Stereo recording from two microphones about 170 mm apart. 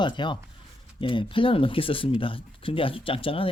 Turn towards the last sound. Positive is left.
turn(degrees=30)  # may be behind; listen again after turning